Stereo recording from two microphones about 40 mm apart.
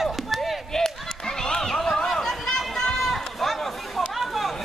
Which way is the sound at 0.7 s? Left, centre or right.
Centre.